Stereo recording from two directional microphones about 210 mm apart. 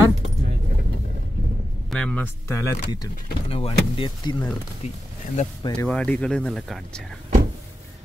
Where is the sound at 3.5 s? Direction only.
25° left (ahead or behind).